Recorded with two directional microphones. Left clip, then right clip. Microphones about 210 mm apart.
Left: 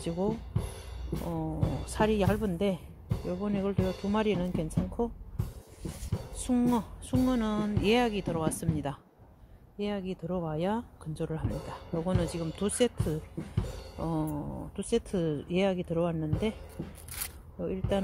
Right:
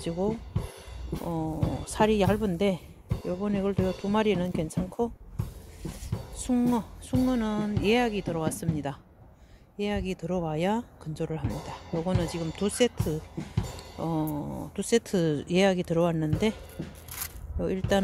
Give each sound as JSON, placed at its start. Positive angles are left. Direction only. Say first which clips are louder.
{"t": 0.0, "sound": "speech", "louder": "right 2 dB", "side_deg": -10}
{"t": 1.1, "sound": "speech", "louder": "right 3 dB", "side_deg": -25}
{"t": 6.3, "sound": "a woman's voice", "louder": "right 2 dB", "side_deg": -5}
{"t": 17.6, "sound": "speech", "louder": "right 5 dB", "side_deg": -20}